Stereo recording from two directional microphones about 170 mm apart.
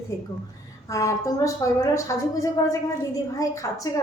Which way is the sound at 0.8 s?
20° left (ahead or behind).